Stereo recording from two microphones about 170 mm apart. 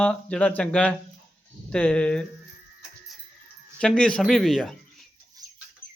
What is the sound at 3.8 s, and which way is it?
Speech, 5° left (ahead or behind).